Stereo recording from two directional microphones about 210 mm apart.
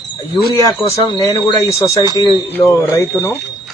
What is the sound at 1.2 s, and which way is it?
Speech, 15° left (ahead or behind).